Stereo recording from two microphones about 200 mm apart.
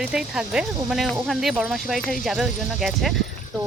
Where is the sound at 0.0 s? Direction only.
5° right (ahead or behind).